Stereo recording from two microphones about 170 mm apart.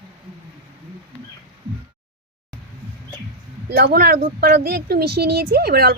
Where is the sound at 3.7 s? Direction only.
65° right (ahead or behind).